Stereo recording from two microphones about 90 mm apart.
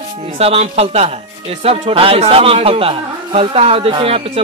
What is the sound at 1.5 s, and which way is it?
Speech, 90° right.